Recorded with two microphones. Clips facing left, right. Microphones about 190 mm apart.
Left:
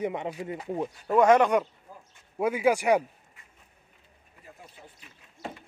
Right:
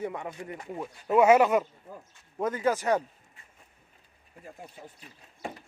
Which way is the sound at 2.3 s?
10° left (ahead or behind).